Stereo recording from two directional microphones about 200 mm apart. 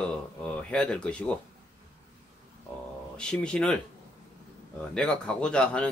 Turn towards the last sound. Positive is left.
turn(degrees=5)  # may be behind; listen again after turning